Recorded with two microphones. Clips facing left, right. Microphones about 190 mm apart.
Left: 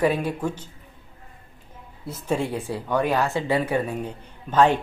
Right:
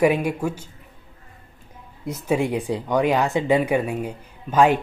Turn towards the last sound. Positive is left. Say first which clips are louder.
# right 1 dB
turn(degrees=-10)  # may be behind; listen again after turning